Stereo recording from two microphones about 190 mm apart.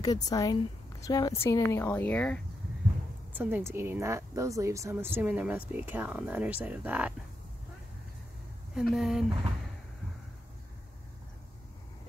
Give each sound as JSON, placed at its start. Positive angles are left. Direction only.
{"t": 0.0, "sound": "a woman's voice", "side_deg": 20}
{"t": 3.3, "sound": "speech", "side_deg": -10}
{"t": 8.7, "sound": "speech", "side_deg": 0}